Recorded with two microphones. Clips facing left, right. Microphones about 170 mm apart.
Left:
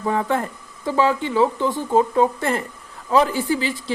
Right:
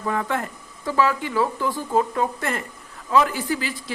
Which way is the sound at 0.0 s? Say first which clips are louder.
Left 4 dB; 25° left (ahead or behind).